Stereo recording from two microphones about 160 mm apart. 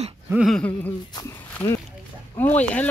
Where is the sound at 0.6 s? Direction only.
10° left (ahead or behind).